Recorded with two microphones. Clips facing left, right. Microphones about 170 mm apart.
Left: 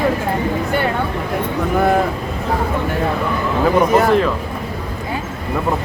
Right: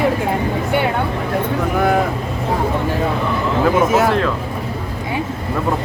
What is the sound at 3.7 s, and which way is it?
Speech, 5° right (ahead or behind).